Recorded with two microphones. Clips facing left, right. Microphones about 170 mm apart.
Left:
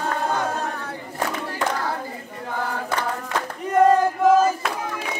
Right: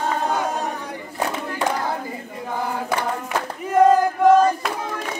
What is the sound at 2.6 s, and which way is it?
Choir, 15° right (ahead or behind).